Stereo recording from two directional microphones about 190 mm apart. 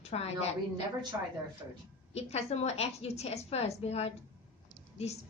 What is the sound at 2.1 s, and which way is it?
A woman's voice, 35° left (ahead or behind).